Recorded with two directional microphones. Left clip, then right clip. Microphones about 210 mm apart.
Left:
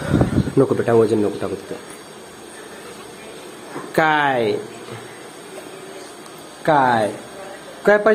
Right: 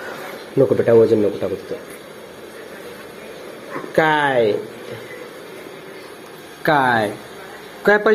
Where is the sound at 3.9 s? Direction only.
15° left (ahead or behind).